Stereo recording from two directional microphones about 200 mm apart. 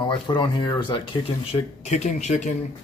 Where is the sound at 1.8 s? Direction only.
35° left (ahead or behind).